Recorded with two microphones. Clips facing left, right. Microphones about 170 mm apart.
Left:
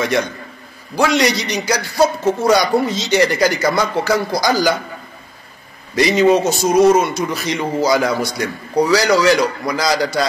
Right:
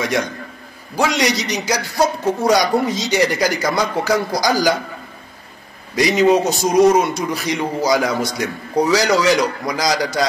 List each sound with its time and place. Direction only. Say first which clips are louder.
0.9 s a man's voice: left 2 dB; 15° right (ahead or behind)
5.9 s a man's voice: left 1 dB; 15° right (ahead or behind)